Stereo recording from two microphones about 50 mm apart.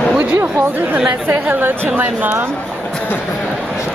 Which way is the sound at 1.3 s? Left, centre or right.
Right.